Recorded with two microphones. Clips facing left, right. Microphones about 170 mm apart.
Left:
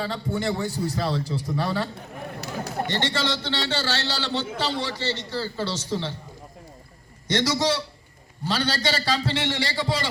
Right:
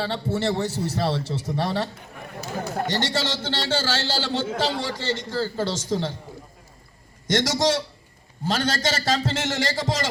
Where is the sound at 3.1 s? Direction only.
45° right (ahead or behind).